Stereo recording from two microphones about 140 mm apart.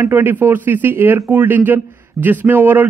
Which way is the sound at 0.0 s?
15° right (ahead or behind).